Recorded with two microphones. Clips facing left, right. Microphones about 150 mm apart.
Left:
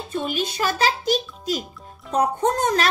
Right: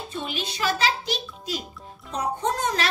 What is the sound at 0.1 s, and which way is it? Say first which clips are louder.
A child's voice: left 9 dB; 45° left (ahead or behind).